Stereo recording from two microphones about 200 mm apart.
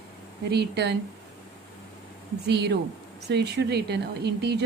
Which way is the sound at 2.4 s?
55° right (ahead or behind).